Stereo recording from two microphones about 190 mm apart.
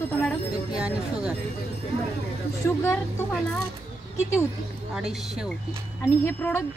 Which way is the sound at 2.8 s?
5° left (ahead or behind).